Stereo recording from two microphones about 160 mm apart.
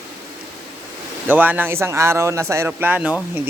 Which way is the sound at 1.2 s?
10° right (ahead or behind).